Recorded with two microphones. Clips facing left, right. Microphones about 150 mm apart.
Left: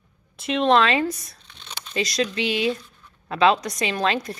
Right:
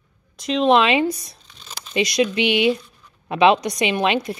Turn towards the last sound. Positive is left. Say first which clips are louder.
# right 4 dB
turn(degrees=-15)  # may be behind; listen again after turning